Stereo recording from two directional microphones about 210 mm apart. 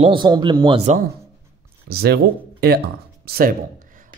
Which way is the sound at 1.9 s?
50° right (ahead or behind).